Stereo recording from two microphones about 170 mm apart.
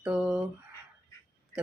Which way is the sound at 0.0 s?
5° right (ahead or behind).